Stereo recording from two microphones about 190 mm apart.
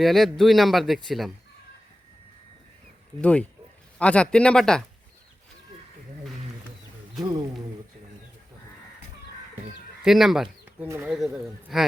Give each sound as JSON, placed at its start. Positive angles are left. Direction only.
{"t": 0.0, "sound": "speech", "side_deg": 0}
{"t": 3.2, "sound": "speech", "side_deg": 5}
{"t": 7.2, "sound": "speech", "side_deg": -25}
{"t": 10.0, "sound": "speech", "side_deg": 0}
{"t": 10.8, "sound": "speech", "side_deg": -15}
{"t": 11.1, "sound": "speech", "side_deg": 0}